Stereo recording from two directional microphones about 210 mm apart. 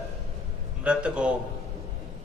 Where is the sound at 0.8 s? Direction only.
5° right (ahead or behind).